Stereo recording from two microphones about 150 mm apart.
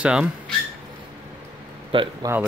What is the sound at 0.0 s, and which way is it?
Speech, 5° right (ahead or behind).